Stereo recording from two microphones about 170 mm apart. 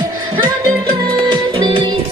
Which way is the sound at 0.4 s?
30° right (ahead or behind).